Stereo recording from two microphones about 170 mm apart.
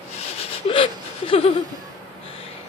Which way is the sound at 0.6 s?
30° left (ahead or behind).